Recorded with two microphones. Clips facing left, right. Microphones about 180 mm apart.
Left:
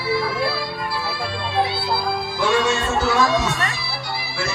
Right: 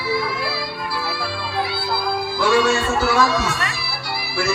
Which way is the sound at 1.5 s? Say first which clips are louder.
Left 3 dB; 20° left (ahead or behind).